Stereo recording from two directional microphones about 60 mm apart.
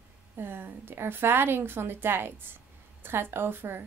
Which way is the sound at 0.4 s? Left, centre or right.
Right.